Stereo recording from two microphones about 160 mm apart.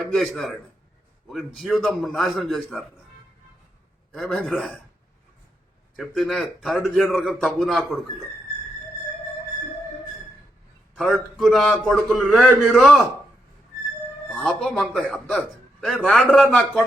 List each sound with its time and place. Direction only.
0.1 s a man's voice: centre (ahead or behind)
4.1 s a man's voice: centre (ahead or behind)
6.0 s a man's voice: centre (ahead or behind)
10.9 s a man's voice: centre (ahead or behind)
14.3 s a man's voice: centre (ahead or behind)